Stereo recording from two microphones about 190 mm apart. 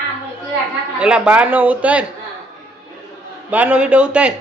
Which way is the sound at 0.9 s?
5° right (ahead or behind).